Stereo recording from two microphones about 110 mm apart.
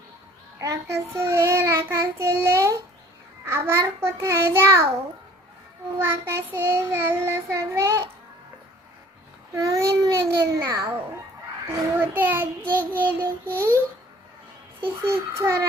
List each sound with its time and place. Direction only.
0.6 s child singing: 30° right (ahead or behind)
6.0 s child singing: 20° right (ahead or behind)
9.6 s a child's voice: 30° right (ahead or behind)
11.9 s child singing: 20° right (ahead or behind)
14.8 s child singing: 20° right (ahead or behind)